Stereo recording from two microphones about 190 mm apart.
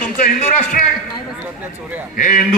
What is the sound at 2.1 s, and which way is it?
Speech, 45° left (ahead or behind).